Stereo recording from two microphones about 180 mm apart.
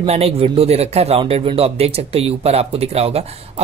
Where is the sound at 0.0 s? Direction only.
35° right (ahead or behind).